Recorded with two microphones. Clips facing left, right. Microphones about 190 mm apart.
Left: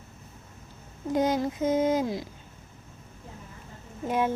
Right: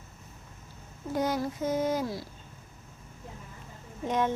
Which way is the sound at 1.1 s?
20° left (ahead or behind).